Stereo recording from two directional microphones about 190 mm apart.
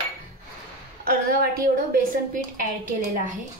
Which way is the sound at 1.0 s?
50° right (ahead or behind).